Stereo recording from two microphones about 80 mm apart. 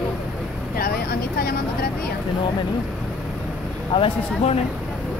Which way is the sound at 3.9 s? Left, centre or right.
Left.